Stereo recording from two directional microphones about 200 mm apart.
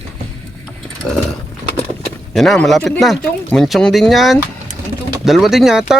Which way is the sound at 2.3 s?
Centre (ahead or behind).